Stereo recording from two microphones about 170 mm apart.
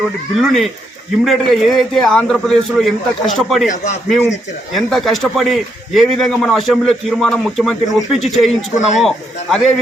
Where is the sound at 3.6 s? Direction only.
45° left (ahead or behind).